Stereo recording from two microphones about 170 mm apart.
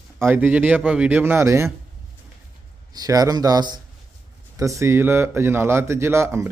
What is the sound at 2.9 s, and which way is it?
A man's voice, 20° right (ahead or behind).